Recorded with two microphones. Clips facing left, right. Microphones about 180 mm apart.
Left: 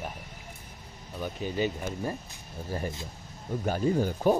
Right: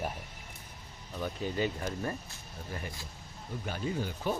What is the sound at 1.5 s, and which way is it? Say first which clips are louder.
Speech: left 5 dB; 20° left (ahead or behind).